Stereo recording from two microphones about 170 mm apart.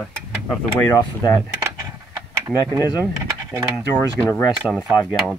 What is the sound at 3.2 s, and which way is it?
Speech, 15° right (ahead or behind).